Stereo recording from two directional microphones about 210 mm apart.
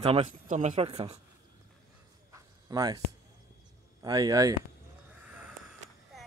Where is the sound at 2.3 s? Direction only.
15° right (ahead or behind).